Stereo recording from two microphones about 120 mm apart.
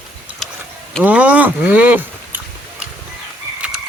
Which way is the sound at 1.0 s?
15° right (ahead or behind).